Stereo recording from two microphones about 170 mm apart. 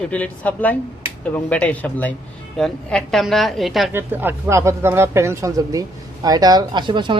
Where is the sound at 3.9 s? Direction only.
10° right (ahead or behind).